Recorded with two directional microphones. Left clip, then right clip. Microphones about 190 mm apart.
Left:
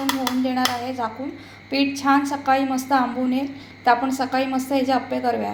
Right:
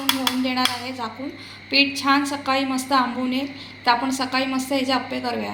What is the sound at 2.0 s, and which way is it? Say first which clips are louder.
A woman's voice: left 1 dB; 35° left (ahead or behind).